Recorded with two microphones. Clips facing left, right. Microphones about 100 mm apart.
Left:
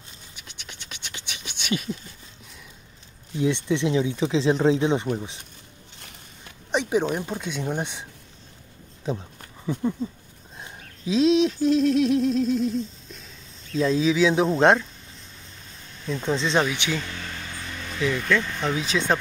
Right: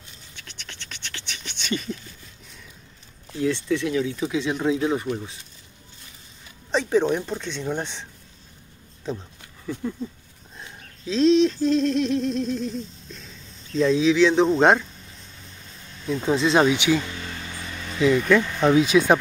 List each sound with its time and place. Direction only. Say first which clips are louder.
0.4 s scratch: right 2 dB; 15° left (ahead or behind)
3.3 s speech: even; 20° left (ahead or behind)
6.7 s speech: right 2 dB; 15° left (ahead or behind)
9.8 s speech: left 5 dB; 20° left (ahead or behind)
10.6 s a sound: left 2 dB; 10° left (ahead or behind)
13.7 s speech: right 3 dB; centre (ahead or behind)
16.1 s speech: right 4 dB; 5° right (ahead or behind); by 18.9 s 20° right (ahead or behind)